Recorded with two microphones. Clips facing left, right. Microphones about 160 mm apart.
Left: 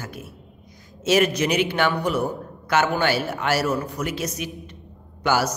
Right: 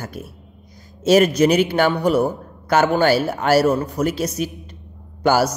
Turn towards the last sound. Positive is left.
turn(degrees=-35)  # may be behind; listen again after turning